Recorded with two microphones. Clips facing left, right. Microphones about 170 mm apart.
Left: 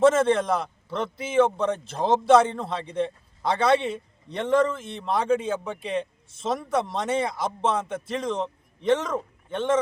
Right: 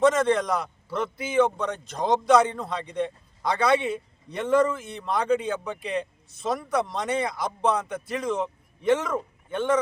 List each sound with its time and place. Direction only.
0.0 s a man's voice: 5° left (ahead or behind)
1.5 s speech: 30° left (ahead or behind)
2.0 s a man's voice: 5° left (ahead or behind)